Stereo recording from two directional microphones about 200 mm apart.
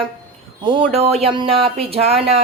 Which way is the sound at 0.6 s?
25° right (ahead or behind).